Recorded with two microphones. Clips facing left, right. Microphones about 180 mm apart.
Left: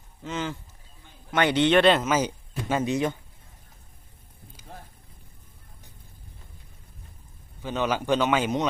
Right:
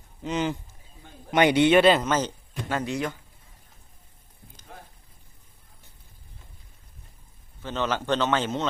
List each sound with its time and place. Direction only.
0.2 s a man's voice: 20° right (ahead or behind); by 3.2 s 20° left (ahead or behind)
7.6 s a man's voice: 10° left (ahead or behind)